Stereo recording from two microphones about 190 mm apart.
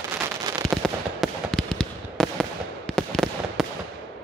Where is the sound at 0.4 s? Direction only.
20° right (ahead or behind).